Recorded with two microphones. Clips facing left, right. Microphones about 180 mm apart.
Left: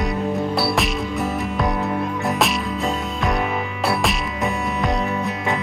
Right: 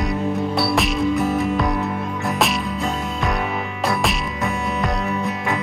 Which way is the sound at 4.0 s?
Centre (ahead or behind).